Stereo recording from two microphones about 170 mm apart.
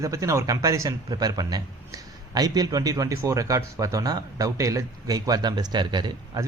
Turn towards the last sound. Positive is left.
turn(degrees=-25)  # may be behind; listen again after turning